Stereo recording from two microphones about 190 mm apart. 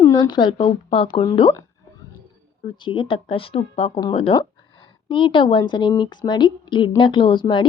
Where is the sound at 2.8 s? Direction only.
25° left (ahead or behind).